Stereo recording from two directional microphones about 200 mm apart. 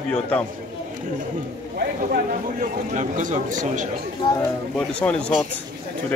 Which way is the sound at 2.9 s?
40° right (ahead or behind).